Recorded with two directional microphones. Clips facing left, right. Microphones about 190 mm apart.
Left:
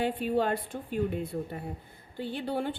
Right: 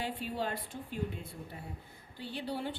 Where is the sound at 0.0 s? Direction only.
55° left (ahead or behind).